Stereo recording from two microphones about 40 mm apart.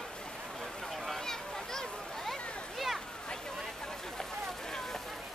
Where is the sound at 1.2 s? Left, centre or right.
Centre.